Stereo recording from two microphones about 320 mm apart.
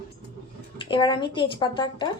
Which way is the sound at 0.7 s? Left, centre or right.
Centre.